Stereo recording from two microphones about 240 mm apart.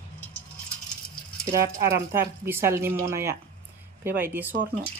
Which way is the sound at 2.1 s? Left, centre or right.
Centre.